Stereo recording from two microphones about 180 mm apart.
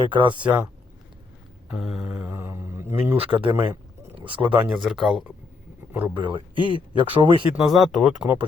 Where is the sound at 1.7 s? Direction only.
5° right (ahead or behind).